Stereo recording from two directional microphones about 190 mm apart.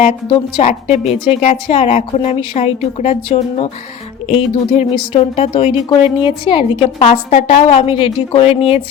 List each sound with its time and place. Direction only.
0.0 s a woman's voice: 25° left (ahead or behind)